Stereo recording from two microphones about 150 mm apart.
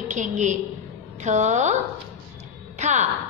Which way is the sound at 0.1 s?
55° right (ahead or behind).